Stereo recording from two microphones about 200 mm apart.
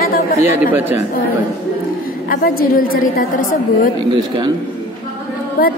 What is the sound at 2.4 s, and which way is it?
A woman's voice, 45° left (ahead or behind).